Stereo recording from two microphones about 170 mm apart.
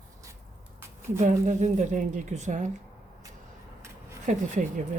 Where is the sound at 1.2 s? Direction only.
45° right (ahead or behind).